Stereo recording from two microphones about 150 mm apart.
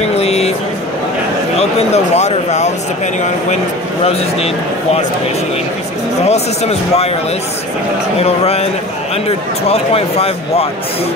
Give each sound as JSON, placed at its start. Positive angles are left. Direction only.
{"t": 0.2, "sound": "a sound", "side_deg": 45}
{"t": 1.6, "sound": "speech", "side_deg": 45}
{"t": 4.0, "sound": "speech", "side_deg": 45}
{"t": 6.2, "sound": "speech", "side_deg": 45}
{"t": 8.2, "sound": "speech", "side_deg": 45}
{"t": 9.7, "sound": "speech", "side_deg": 40}